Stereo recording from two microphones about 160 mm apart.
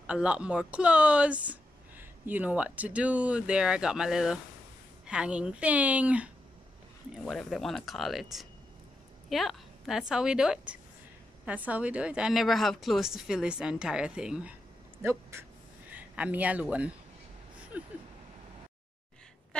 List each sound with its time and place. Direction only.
0.0 s a woman's voice: 5° right (ahead or behind)
15.0 s speech: 15° right (ahead or behind)
17.7 s vehicle: 10° right (ahead or behind)
19.5 s a sound: 5° left (ahead or behind)